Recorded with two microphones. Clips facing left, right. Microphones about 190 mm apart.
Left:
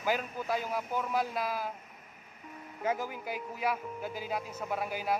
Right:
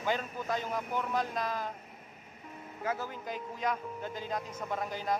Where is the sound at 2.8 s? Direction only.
10° left (ahead or behind).